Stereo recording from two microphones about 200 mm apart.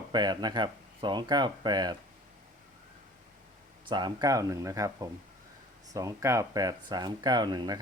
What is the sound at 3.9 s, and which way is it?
Speech, 20° right (ahead or behind).